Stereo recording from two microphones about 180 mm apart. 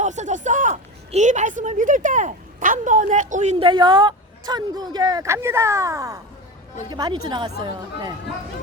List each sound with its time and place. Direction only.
0.0 s a woman's voice: 40° right (ahead or behind); by 8.1 s 25° right (ahead or behind)